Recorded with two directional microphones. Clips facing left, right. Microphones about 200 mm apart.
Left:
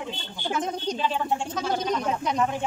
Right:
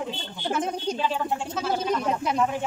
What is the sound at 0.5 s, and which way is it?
A woman's voice, 5° right (ahead or behind).